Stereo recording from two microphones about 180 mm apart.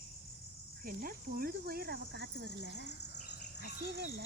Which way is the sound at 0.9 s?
55° right (ahead or behind).